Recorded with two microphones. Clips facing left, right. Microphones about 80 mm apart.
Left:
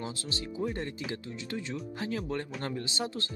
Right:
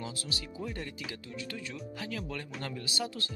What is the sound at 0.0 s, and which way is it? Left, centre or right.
Speech, left.